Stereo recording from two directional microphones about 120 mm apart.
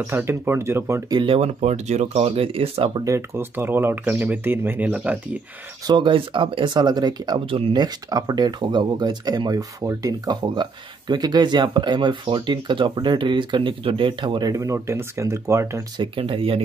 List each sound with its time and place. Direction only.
0.0 s speech: 20° right (ahead or behind)
1.1 s speech: 50° right (ahead or behind)
3.1 s speech: 20° right (ahead or behind)
5.9 s speech: 40° right (ahead or behind)
7.8 s speech: 35° right (ahead or behind)
14.5 s speech: 25° right (ahead or behind)
16.0 s speech: 50° right (ahead or behind)